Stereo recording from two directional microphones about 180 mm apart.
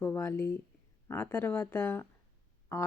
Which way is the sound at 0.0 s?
15° left (ahead or behind).